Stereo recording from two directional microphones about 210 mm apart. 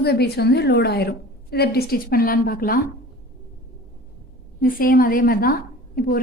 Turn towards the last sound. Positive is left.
turn(degrees=45)  # may be behind; listen again after turning